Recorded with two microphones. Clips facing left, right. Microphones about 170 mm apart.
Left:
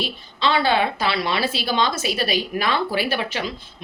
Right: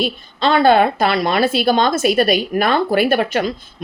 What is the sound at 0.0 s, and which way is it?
A woman's voice, 50° right (ahead or behind).